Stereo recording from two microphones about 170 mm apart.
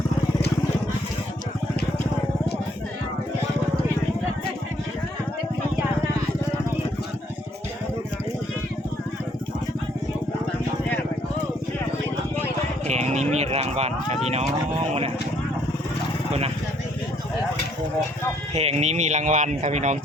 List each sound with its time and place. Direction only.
12.9 s clip-clop: 40° right (ahead or behind)
18.5 s speech: 35° right (ahead or behind)